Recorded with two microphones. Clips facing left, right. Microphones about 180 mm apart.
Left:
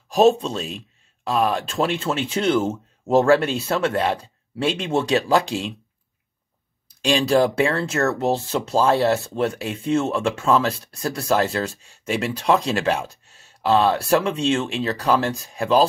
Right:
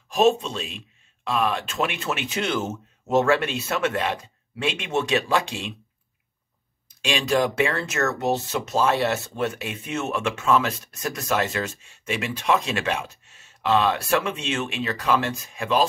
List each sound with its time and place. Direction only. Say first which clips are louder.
0.1 s speech: left 3 dB; 35° left (ahead or behind)
6.9 s speech: left 5 dB; 35° left (ahead or behind)